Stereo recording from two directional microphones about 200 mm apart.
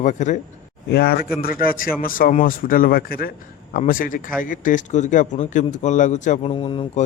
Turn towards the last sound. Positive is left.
turn(degrees=25)  # may be behind; listen again after turning